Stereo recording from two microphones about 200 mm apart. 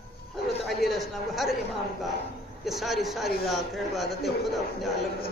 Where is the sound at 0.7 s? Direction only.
Centre (ahead or behind).